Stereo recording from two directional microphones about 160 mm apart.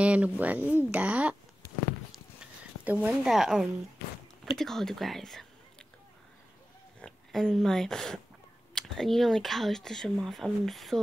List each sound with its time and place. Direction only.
0.0 s speech: 10° right (ahead or behind)
2.8 s speech: 10° right (ahead or behind)
7.0 s speech: 5° left (ahead or behind)